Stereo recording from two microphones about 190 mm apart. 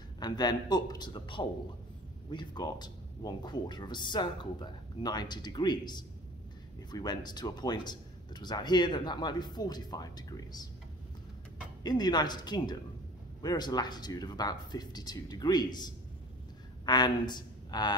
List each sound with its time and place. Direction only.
0.2 s speech: 20° left (ahead or behind)
11.8 s speech: 20° left (ahead or behind)